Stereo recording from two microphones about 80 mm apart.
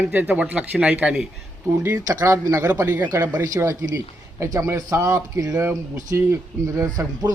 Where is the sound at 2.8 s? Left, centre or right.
Right.